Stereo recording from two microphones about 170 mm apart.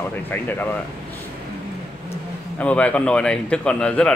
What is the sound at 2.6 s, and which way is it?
Speech, 5° left (ahead or behind).